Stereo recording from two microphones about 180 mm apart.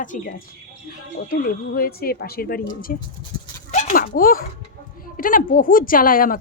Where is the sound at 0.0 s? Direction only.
45° left (ahead or behind).